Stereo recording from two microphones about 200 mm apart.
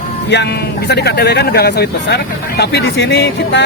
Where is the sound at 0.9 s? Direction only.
55° left (ahead or behind).